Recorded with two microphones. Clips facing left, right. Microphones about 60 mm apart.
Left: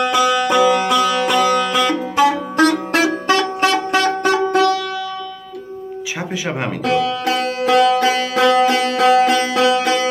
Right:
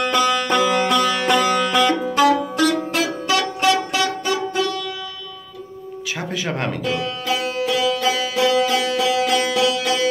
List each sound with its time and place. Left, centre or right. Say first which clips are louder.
0.0 s music: left 3 dB; centre
2.7 s music: left 4 dB; left
3.3 s music: left 2 dB; left
4.2 s music: left 7 dB; left
6.3 s speech: left 1 dB; centre
6.8 s music: left 6 dB; left